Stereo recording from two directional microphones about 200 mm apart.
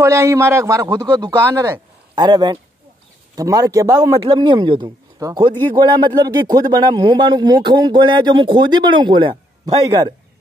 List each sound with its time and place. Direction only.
0.0 s a man's voice: 15° right (ahead or behind)